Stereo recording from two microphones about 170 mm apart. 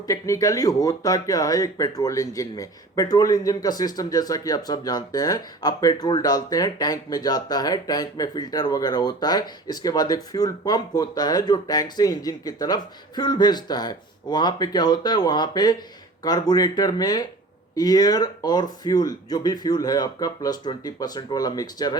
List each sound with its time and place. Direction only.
0.1 s speech: 20° left (ahead or behind)